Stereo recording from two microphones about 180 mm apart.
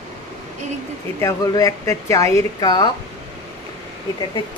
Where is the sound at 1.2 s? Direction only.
20° left (ahead or behind).